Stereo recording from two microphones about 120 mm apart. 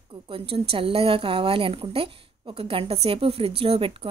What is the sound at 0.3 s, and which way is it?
A woman's voice, 50° right (ahead or behind).